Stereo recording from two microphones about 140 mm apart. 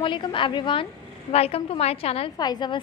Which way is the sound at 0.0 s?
35° left (ahead or behind).